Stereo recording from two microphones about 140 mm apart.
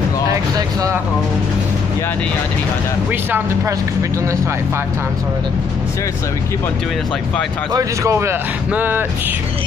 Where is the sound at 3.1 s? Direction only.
15° right (ahead or behind).